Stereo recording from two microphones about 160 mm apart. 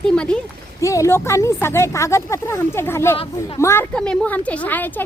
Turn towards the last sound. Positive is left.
turn(degrees=10)  # may be behind; listen again after turning